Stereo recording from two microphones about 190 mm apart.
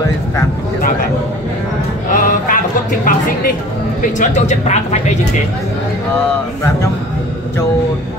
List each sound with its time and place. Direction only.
2.1 s music: 45° left (ahead or behind)
4.0 s speech: 40° left (ahead or behind)